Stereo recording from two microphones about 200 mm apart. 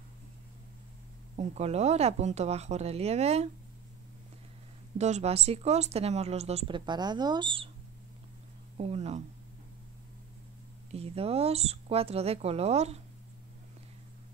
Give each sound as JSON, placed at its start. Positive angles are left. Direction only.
{"t": 1.3, "sound": "speech", "side_deg": -35}
{"t": 4.9, "sound": "speech", "side_deg": -35}
{"t": 8.7, "sound": "speech", "side_deg": -35}
{"t": 10.9, "sound": "speech", "side_deg": -30}